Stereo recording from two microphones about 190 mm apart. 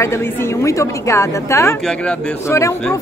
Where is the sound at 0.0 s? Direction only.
15° left (ahead or behind).